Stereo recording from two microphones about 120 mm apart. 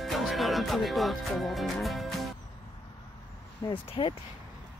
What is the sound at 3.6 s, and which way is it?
Speech, 35° left (ahead or behind).